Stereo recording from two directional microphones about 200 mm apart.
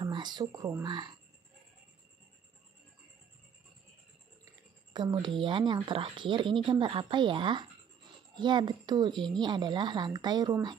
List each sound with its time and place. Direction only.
0.0 s speech: 20° right (ahead or behind)
4.9 s a child's voice: 20° right (ahead or behind)
9.1 s speech: centre (ahead or behind)
9.4 s speech: 20° right (ahead or behind)